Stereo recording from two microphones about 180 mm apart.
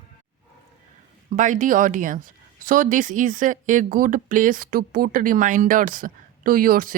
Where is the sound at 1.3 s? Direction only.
45° right (ahead or behind).